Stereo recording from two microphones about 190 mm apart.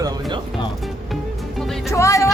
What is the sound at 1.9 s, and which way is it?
Speech, 15° left (ahead or behind).